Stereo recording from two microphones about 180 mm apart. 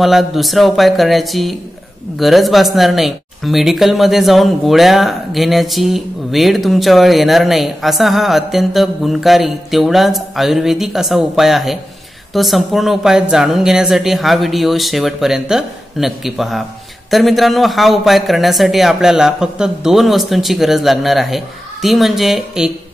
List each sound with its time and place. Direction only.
0.0 s speech: centre (ahead or behind)